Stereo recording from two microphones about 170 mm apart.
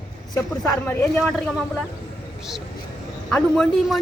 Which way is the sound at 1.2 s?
Centre (ahead or behind).